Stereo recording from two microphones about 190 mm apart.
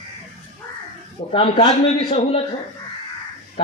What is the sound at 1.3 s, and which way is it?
Speech, 30° left (ahead or behind).